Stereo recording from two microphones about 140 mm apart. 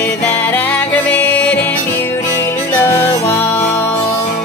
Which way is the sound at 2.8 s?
15° left (ahead or behind).